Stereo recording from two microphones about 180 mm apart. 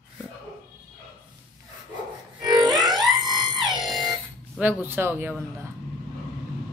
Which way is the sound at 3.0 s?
25° right (ahead or behind).